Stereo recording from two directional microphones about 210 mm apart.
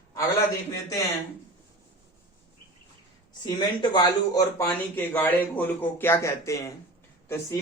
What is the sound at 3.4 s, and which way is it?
Speech, 20° left (ahead or behind).